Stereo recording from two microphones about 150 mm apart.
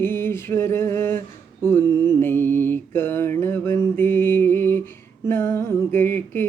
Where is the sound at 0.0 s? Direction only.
15° left (ahead or behind).